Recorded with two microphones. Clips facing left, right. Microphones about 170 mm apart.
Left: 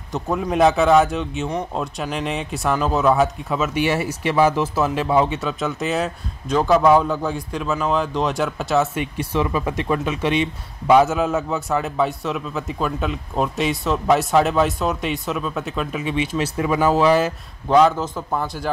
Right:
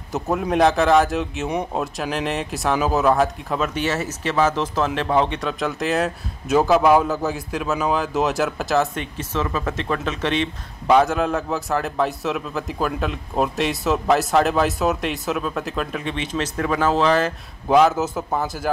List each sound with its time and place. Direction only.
0.1 s a man's voice: 5° right (ahead or behind)
9.0 s a man's voice: 10° left (ahead or behind)
17.6 s a man's voice: 5° right (ahead or behind)